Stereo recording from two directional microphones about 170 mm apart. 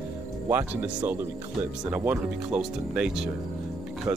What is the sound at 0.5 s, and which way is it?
Speech, 10° right (ahead or behind).